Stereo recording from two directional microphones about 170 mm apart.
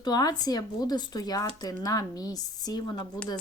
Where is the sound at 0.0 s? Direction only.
25° left (ahead or behind).